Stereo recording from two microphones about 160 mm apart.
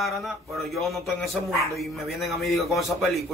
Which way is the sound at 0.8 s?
Centre (ahead or behind).